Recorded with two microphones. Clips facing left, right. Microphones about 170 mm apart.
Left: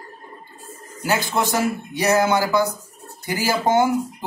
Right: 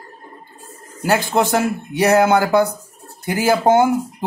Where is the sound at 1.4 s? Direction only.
60° right (ahead or behind).